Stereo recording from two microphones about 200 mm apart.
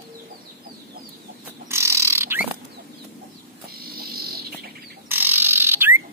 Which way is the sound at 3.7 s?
50° right (ahead or behind).